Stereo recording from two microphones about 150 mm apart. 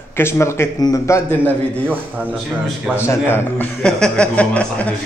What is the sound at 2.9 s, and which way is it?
A man's voice, 15° left (ahead or behind).